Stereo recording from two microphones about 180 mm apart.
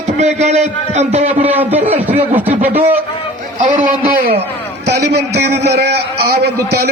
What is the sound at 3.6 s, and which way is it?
Speech, 45° right (ahead or behind).